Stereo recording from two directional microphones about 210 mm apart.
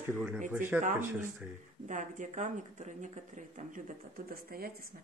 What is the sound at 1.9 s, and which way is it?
A woman's voice, 35° right (ahead or behind).